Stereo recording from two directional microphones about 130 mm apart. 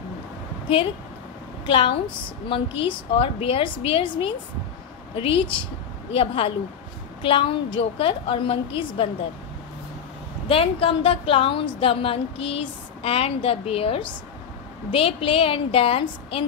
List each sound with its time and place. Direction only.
1.7 s a woman's voice: 40° left (ahead or behind)
10.5 s a woman's voice: 45° left (ahead or behind)